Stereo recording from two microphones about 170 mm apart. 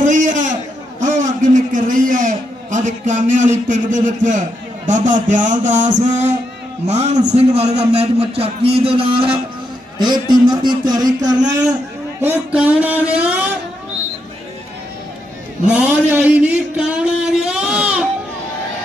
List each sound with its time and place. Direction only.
0.0 s a sound: 50° right (ahead or behind)
1.0 s a man's voice: 45° right (ahead or behind); by 11.5 s 25° right (ahead or behind)
12.2 s speech: 10° right (ahead or behind)
15.7 s a man's voice: 10° right (ahead or behind)